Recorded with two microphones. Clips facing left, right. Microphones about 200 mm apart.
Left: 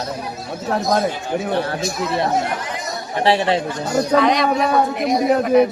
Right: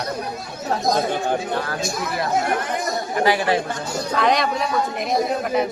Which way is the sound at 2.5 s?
55° right (ahead or behind).